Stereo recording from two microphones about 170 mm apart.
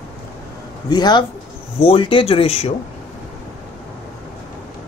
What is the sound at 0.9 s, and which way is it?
Speech, 25° left (ahead or behind).